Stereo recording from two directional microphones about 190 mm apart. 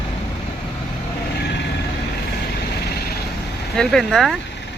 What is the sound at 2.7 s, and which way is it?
Vehicle, 60° left (ahead or behind).